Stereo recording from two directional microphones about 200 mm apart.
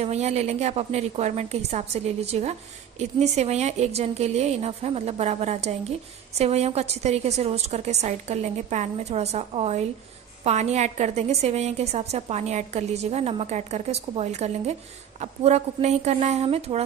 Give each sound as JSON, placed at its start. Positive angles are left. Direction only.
{"t": 0.0, "sound": "a woman's voice", "side_deg": -35}